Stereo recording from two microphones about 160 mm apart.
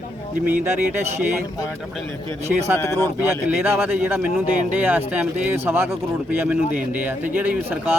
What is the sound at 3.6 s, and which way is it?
Speech, 15° right (ahead or behind).